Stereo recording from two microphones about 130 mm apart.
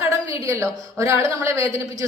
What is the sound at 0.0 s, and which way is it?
A woman's voice, 20° right (ahead or behind).